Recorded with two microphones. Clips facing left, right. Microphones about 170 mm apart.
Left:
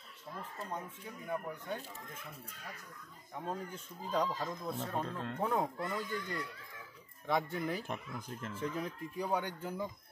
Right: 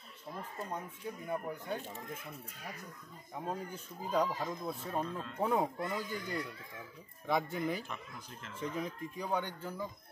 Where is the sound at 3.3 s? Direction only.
10° right (ahead or behind).